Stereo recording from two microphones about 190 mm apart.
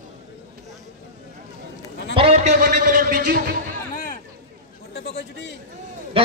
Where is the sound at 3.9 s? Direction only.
45° left (ahead or behind).